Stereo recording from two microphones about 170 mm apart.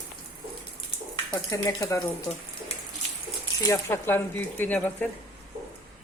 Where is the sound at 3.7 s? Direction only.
15° left (ahead or behind).